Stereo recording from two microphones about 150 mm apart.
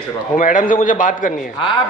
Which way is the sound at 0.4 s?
60° left (ahead or behind).